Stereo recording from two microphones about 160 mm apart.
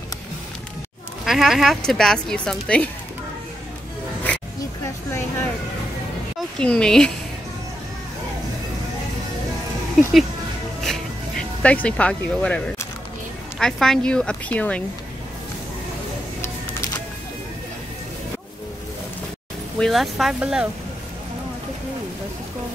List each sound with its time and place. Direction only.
1.2 s speech: centre (ahead or behind)
6.6 s speech: 5° left (ahead or behind)
10.8 s speech: 5° left (ahead or behind)
19.8 s speech: centre (ahead or behind)